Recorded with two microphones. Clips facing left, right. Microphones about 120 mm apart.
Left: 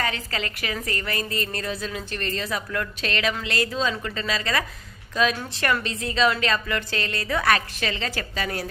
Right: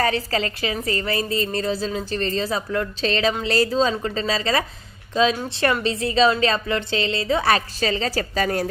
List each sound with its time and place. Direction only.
0.0 s a woman's voice: 35° right (ahead or behind)